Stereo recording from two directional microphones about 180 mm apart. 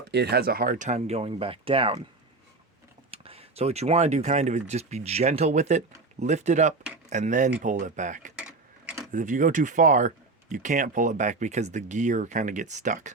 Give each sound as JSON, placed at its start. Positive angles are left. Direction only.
{"t": 0.1, "sound": "speech", "side_deg": -65}
{"t": 3.1, "sound": "speech", "side_deg": -30}
{"t": 8.4, "sound": "sewing machine", "side_deg": -5}
{"t": 9.1, "sound": "speech", "side_deg": -45}